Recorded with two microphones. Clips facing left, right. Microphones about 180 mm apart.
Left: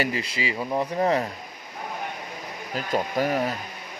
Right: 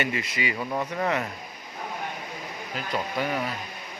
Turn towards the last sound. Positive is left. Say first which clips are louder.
# left 4 dB
turn(degrees=40)  # may be behind; listen again after turning